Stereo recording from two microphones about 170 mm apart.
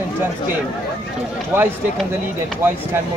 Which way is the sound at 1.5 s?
15° right (ahead or behind).